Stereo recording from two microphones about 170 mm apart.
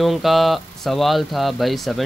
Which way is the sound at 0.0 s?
Centre (ahead or behind).